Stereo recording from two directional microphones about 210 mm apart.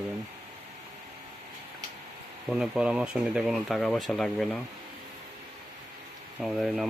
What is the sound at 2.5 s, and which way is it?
Speech, 5° right (ahead or behind).